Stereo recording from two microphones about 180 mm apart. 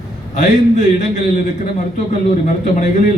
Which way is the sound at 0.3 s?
45° left (ahead or behind).